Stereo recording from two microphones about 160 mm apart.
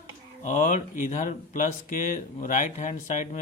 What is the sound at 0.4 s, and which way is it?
Speech, 50° left (ahead or behind).